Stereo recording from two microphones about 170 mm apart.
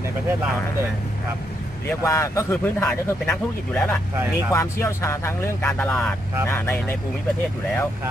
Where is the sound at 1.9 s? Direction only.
15° left (ahead or behind).